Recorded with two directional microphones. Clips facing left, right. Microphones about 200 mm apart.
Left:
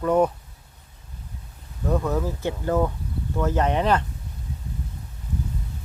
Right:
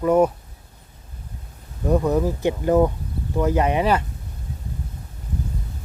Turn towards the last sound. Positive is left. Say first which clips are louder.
# right 2 dB
turn(degrees=-10)  # may be behind; listen again after turning